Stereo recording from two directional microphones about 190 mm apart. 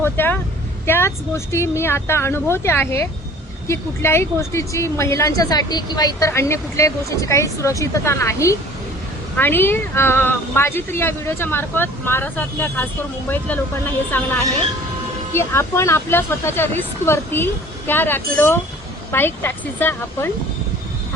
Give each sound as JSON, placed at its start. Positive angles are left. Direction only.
{"t": 0.0, "sound": "speech", "side_deg": 10}